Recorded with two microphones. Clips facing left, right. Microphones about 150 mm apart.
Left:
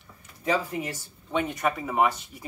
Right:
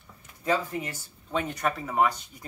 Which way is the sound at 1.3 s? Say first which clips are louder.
Left 2 dB; centre (ahead or behind).